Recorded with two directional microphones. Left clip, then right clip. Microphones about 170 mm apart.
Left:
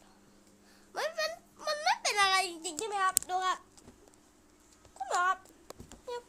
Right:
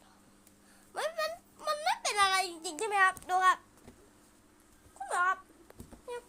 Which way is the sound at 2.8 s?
15° right (ahead or behind).